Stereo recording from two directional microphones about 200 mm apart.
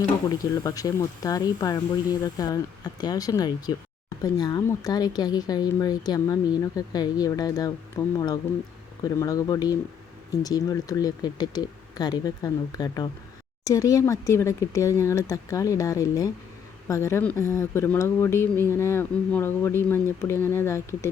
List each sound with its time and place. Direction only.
0.3 s speech: 15° left (ahead or behind)